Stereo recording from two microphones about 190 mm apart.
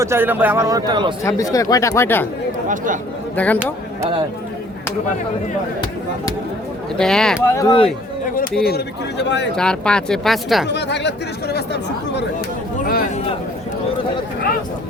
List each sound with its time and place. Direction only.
0.0 s speech: 10° right (ahead or behind)
1.2 s speech: 15° left (ahead or behind)
2.6 s speech: 45° right (ahead or behind)
3.3 s speech: 10° left (ahead or behind)
7.0 s speech: 5° left (ahead or behind)
7.5 s speech: 20° left (ahead or behind)
8.4 s speech: 55° left (ahead or behind)
9.6 s speech: 5° left (ahead or behind)
10.7 s speech: 65° left (ahead or behind)
12.8 s speech: 50° left (ahead or behind)